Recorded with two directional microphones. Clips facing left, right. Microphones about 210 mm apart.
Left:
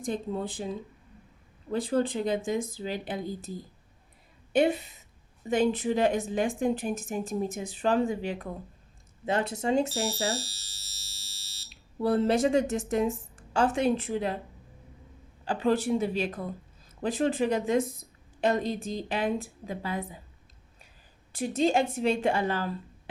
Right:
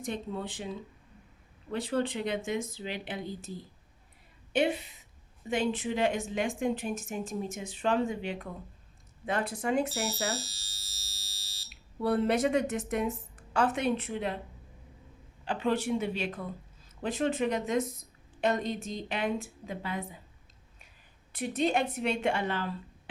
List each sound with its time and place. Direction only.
0.1 s a woman's voice: 35° left (ahead or behind)
1.7 s a woman's voice: 35° left (ahead or behind)
9.2 s a woman's voice: 25° left (ahead or behind)
15.4 s a woman's voice: 35° left (ahead or behind)
21.3 s a woman's voice: 30° left (ahead or behind)